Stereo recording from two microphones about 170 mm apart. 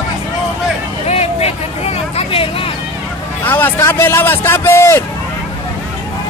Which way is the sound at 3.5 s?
10° left (ahead or behind).